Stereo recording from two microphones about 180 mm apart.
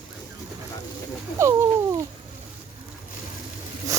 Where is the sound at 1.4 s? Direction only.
15° right (ahead or behind).